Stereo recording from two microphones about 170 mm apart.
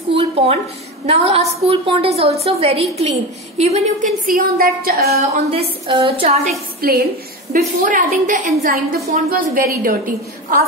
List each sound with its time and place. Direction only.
0.1 s a woman's voice: 35° right (ahead or behind); by 5.2 s 65° right (ahead or behind)
5.3 s a woman's voice: 35° right (ahead or behind)
6.8 s a woman's voice: 60° right (ahead or behind)